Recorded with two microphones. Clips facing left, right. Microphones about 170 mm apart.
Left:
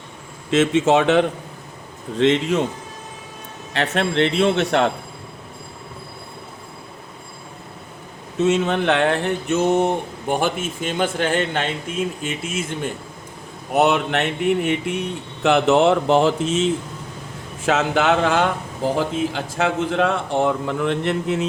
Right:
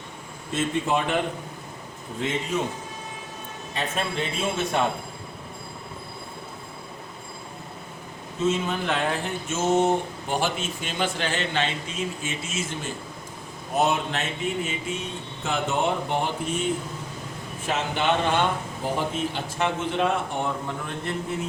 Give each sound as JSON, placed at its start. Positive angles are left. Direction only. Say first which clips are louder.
{"t": 0.5, "sound": "a man's voice", "louder": "left 9 dB", "side_deg": 90}
{"t": 3.7, "sound": "speech", "louder": "left 7 dB", "side_deg": 80}
{"t": 8.4, "sound": "speech", "louder": "left 7 dB", "side_deg": 75}
{"t": 10.2, "sound": "speech", "louder": "left 8 dB", "side_deg": 50}
{"t": 13.7, "sound": "a man's voice", "louder": "left 6 dB", "side_deg": 65}